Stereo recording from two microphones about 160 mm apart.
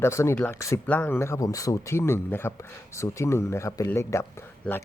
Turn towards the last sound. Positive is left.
turn(degrees=15)  # may be behind; listen again after turning